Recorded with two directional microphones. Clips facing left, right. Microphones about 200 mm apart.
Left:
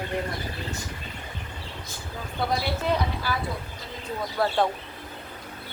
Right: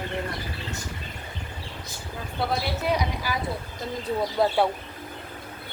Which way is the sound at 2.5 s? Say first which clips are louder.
Even; 10° right (ahead or behind).